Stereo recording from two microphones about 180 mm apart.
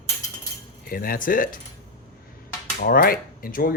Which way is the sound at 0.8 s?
50° left (ahead or behind).